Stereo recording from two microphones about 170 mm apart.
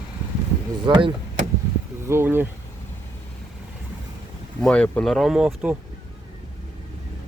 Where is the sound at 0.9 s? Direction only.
30° right (ahead or behind).